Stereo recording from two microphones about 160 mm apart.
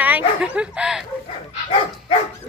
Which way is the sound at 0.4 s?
5° right (ahead or behind).